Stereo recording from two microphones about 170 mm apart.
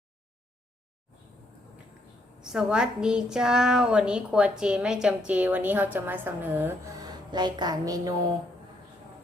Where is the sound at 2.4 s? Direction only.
5° right (ahead or behind).